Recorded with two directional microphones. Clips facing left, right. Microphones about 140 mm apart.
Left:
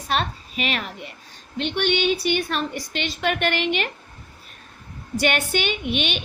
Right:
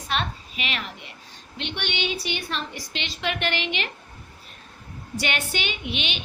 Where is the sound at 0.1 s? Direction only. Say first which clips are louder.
Left 4 dB; 45° left (ahead or behind).